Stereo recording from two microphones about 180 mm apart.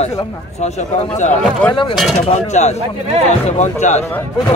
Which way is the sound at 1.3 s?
5° left (ahead or behind).